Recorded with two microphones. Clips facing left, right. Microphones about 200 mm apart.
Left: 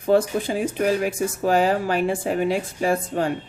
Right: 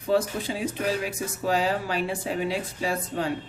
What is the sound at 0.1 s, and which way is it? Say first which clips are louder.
A woman's voice: left 5 dB; 50° left (ahead or behind).